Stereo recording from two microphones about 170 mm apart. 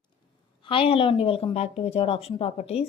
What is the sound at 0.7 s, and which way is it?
Speech, 30° left (ahead or behind).